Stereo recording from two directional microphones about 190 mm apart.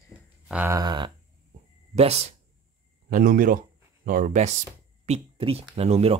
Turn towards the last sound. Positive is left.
turn(degrees=-30)  # may be behind; listen again after turning